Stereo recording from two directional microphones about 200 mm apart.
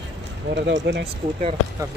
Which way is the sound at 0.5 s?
60° right (ahead or behind).